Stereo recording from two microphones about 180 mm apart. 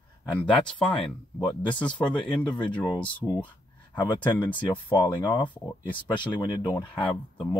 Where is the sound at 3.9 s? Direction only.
25° left (ahead or behind).